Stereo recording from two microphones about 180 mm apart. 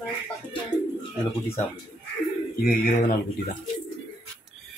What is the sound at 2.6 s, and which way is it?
Speech, 45° left (ahead or behind).